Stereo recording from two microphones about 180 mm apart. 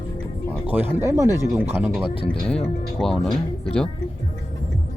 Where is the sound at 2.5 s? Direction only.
5° left (ahead or behind).